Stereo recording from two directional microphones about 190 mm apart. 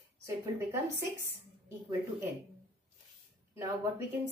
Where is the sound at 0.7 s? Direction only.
15° right (ahead or behind).